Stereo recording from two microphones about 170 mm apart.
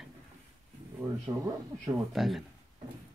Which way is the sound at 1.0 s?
20° right (ahead or behind).